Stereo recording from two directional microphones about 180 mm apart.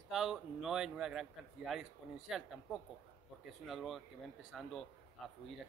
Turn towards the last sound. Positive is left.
turn(degrees=0)  # may be behind; listen again after turning